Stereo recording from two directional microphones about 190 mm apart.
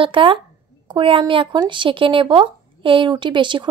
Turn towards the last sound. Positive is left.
turn(degrees=-25)  # may be behind; listen again after turning